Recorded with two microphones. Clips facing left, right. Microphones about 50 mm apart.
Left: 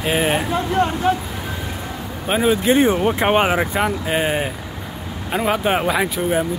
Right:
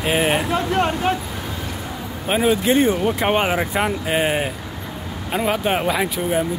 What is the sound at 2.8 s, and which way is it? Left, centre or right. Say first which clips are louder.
Speech: left 2 dB; left.